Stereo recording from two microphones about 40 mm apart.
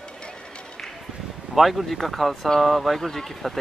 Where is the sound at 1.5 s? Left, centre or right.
Centre.